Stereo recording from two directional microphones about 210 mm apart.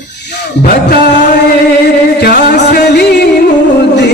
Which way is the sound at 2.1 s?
50° left (ahead or behind).